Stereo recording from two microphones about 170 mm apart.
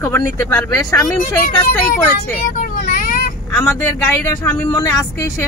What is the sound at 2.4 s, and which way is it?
Vehicle, 60° left (ahead or behind).